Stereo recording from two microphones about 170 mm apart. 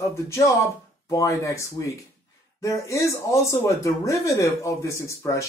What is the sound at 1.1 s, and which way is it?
Speech, 20° left (ahead or behind).